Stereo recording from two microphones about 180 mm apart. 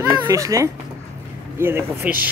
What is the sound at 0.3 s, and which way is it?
Speech, 15° right (ahead or behind).